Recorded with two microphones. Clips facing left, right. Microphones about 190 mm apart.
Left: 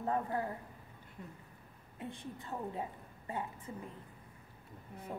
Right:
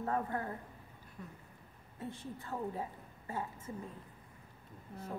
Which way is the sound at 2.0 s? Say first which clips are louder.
Right 1 dB; 15° left (ahead or behind).